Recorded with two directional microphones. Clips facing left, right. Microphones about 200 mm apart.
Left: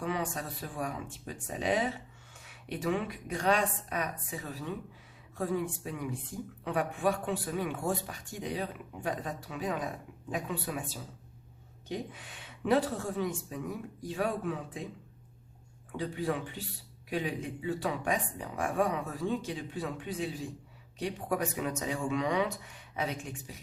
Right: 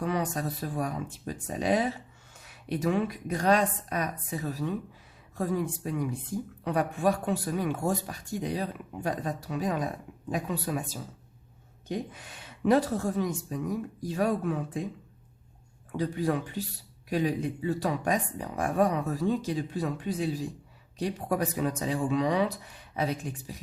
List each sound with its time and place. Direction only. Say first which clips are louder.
0.0 s speech: right 4 dB; 40° right (ahead or behind)
16.0 s speech: right 5 dB; 40° right (ahead or behind)